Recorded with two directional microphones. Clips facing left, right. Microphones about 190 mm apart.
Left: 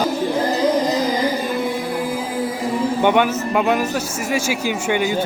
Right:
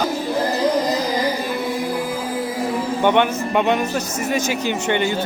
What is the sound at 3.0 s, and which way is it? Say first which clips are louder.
A man's voice: right 1 dB; 5° left (ahead or behind).